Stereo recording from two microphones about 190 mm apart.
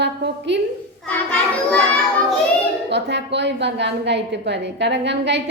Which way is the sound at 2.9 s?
65° right (ahead or behind).